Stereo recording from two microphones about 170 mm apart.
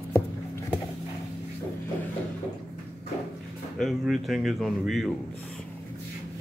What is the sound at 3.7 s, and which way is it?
Speech, centre (ahead or behind).